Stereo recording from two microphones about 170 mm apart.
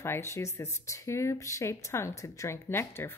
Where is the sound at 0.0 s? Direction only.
15° left (ahead or behind).